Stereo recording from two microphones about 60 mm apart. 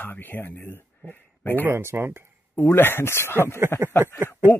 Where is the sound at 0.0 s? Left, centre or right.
Left.